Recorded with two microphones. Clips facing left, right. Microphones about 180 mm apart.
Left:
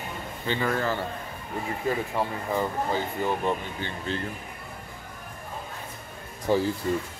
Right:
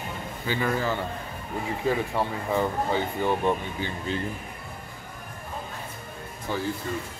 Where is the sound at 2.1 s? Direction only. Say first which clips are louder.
Right 1 dB; 15° right (ahead or behind).